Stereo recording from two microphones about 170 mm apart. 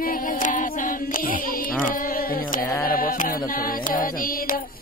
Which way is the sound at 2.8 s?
55° left (ahead or behind).